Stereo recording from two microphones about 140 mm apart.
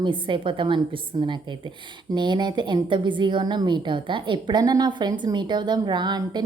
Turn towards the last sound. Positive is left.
turn(degrees=-30)  # may be behind; listen again after turning